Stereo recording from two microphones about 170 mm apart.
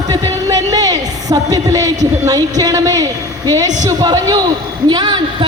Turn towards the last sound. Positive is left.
turn(degrees=-25)  # may be behind; listen again after turning